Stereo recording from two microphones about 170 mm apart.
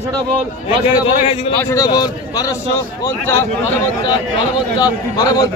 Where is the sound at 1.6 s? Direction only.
20° left (ahead or behind).